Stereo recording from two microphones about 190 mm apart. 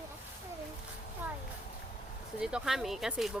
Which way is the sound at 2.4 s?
5° right (ahead or behind).